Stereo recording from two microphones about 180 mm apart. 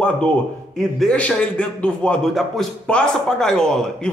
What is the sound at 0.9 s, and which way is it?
A man's voice, 5° left (ahead or behind).